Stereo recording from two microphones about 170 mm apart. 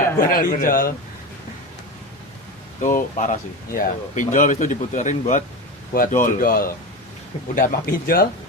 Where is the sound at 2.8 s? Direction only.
45° left (ahead or behind).